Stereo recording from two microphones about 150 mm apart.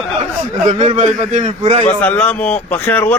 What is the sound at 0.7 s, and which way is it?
A man's voice, 50° right (ahead or behind).